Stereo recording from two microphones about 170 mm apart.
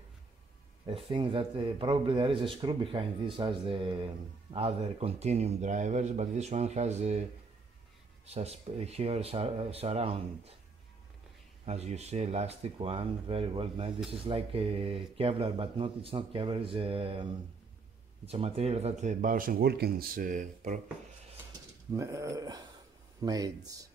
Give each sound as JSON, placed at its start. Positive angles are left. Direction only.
{"t": 0.8, "sound": "speech", "side_deg": -30}
{"t": 8.3, "sound": "speech", "side_deg": -35}
{"t": 11.6, "sound": "speech", "side_deg": -40}
{"t": 21.9, "sound": "speech", "side_deg": -20}